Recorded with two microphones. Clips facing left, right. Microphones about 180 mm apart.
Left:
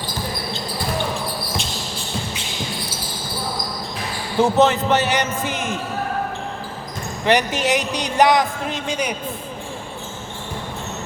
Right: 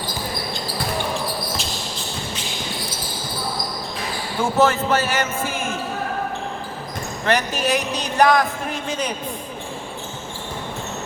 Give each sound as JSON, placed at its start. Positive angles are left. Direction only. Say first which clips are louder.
{"t": 4.4, "sound": "speech", "louder": "left 3 dB", "side_deg": 20}
{"t": 7.3, "sound": "speech", "louder": "left 3 dB", "side_deg": 15}